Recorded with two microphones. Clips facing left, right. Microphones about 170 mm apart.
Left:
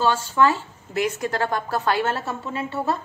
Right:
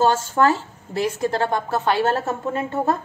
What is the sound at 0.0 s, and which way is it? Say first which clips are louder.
A woman's voice: right 2 dB; 45° right (ahead or behind).